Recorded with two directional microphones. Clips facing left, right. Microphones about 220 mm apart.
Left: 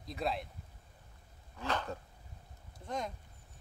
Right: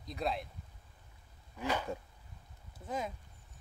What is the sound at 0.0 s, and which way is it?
Speech, centre (ahead or behind).